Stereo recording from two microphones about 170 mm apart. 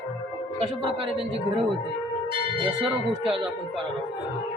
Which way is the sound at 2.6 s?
30° right (ahead or behind).